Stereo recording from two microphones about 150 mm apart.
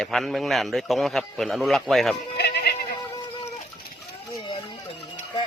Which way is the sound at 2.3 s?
90° left.